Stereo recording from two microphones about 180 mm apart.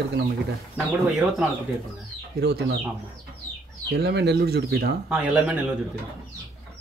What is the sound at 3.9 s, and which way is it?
Speech, 70° right (ahead or behind).